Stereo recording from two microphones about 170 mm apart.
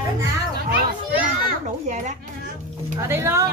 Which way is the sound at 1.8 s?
45° right (ahead or behind).